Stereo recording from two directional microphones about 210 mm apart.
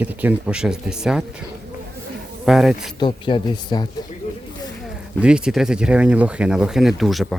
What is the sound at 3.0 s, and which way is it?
Speech, 25° left (ahead or behind).